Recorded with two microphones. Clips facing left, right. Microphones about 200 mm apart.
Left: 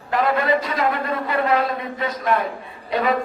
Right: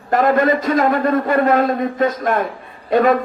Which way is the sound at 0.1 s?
45° right (ahead or behind).